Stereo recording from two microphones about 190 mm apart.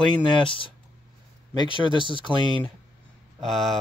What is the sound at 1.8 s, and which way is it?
Speech, 25° right (ahead or behind).